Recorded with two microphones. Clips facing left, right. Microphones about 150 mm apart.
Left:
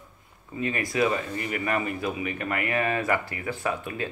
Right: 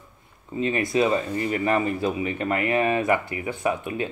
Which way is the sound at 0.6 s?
25° right (ahead or behind).